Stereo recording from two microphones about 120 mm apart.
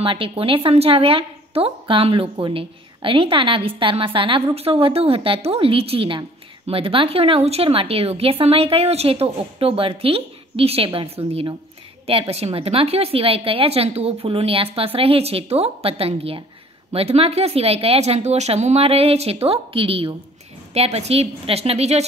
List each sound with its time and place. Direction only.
0.0 s a woman's voice: 50° right (ahead or behind)
12.1 s a woman's voice: 55° right (ahead or behind)